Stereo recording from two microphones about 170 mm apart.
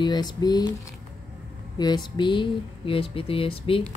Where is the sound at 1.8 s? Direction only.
25° left (ahead or behind).